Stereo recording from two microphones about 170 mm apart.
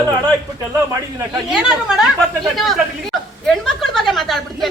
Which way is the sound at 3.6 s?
Centre (ahead or behind).